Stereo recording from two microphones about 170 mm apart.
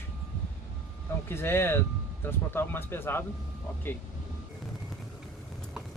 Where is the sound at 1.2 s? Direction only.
15° left (ahead or behind).